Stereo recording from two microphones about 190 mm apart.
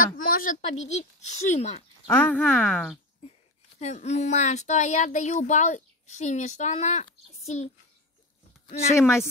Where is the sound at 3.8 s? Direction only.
35° left (ahead or behind).